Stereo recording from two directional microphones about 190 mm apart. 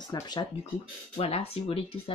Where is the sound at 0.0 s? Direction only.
20° left (ahead or behind).